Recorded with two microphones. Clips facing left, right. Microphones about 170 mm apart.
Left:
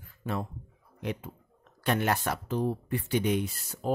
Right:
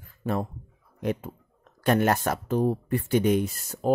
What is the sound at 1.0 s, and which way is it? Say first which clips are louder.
Speech: right 6 dB; 45° right (ahead or behind).